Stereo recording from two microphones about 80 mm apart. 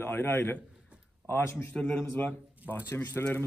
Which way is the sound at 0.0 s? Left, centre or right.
Left.